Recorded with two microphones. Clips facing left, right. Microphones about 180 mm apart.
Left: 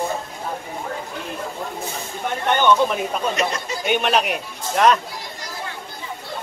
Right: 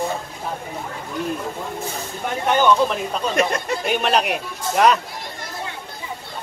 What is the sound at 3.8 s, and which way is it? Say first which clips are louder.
Speech: left 2 dB; centre (ahead or behind).